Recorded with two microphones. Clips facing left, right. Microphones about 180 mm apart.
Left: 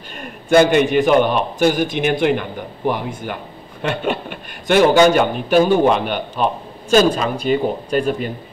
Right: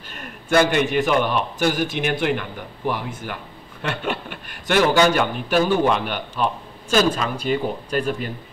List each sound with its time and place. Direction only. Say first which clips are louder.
0.5 s a man's voice: left 5 dB; 20° left (ahead or behind)